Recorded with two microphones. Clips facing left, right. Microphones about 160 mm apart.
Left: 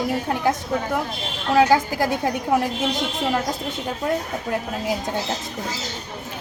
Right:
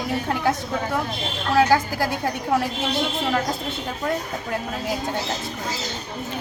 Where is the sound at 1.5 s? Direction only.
15° left (ahead or behind).